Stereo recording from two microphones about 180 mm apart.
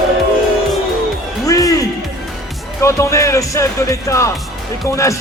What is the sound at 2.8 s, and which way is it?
Speech, 15° left (ahead or behind).